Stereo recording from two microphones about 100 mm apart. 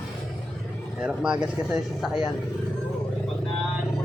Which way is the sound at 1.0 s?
10° right (ahead or behind).